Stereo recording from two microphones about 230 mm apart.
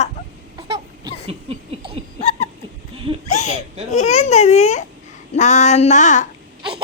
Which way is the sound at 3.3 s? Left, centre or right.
Left.